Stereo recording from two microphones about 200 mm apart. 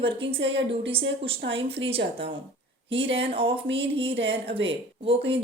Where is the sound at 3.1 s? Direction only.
30° right (ahead or behind).